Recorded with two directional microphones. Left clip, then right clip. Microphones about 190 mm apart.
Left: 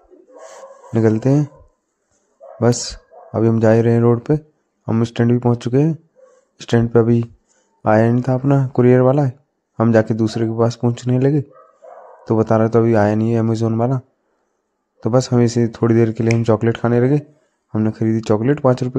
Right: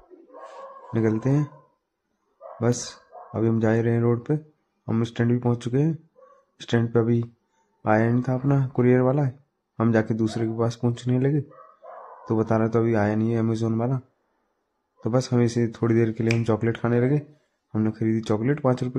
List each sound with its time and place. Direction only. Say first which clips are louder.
0.9 s speech: left 8 dB; 30° left (ahead or behind)
2.6 s speech: left 9 dB; 25° left (ahead or behind)